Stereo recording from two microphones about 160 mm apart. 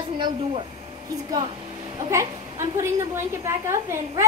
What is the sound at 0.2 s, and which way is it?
Speech, 35° right (ahead or behind).